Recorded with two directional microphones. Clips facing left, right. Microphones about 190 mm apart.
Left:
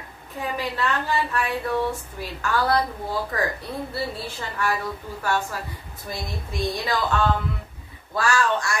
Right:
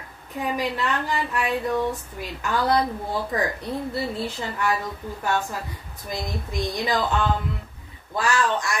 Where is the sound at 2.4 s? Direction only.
20° right (ahead or behind).